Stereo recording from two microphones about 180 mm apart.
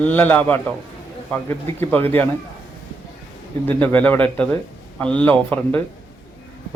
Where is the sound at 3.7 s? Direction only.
10° left (ahead or behind).